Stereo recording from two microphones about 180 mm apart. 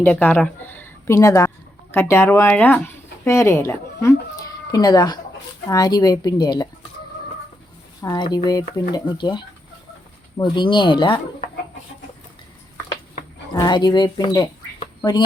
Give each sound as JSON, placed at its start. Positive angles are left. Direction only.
{"t": 0.0, "sound": "a woman's voice", "side_deg": 10}
{"t": 8.0, "sound": "speech", "side_deg": 20}
{"t": 13.5, "sound": "speech", "side_deg": 25}